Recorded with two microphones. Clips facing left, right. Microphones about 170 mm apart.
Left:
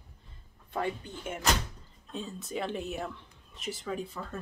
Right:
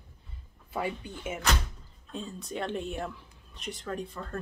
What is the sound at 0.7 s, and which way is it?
Speech, 5° right (ahead or behind).